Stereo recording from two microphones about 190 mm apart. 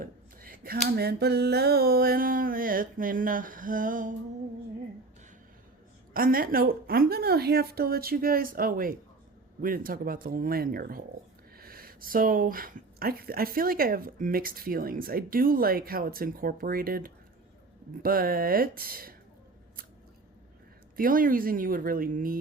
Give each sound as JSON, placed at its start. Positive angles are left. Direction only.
{"t": 0.0, "sound": "a sound", "side_deg": -50}
{"t": 0.9, "sound": "speech", "side_deg": -55}
{"t": 6.1, "sound": "speech", "side_deg": -50}
{"t": 20.9, "sound": "speech", "side_deg": -50}